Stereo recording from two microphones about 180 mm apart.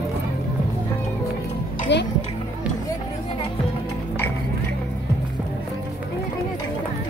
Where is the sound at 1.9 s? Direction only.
75° left (ahead or behind).